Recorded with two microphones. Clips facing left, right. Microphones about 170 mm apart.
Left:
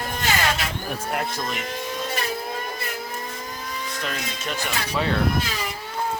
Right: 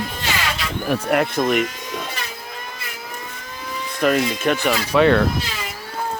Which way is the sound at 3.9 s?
60° right (ahead or behind).